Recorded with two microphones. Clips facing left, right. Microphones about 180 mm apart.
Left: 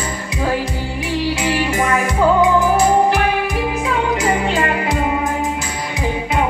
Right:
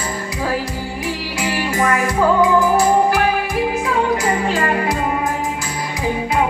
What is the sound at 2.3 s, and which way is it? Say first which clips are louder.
Music: even; 20° left (ahead or behind).